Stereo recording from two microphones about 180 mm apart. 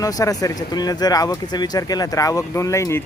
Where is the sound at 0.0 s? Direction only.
20° left (ahead or behind).